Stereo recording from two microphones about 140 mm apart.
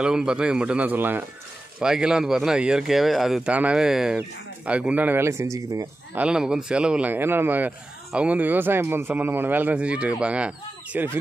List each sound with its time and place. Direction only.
0.0 s speech: 5° right (ahead or behind); by 5.9 s 20° right (ahead or behind)
6.1 s speech: 5° right (ahead or behind)